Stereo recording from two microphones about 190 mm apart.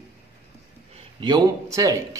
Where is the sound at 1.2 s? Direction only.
20° right (ahead or behind).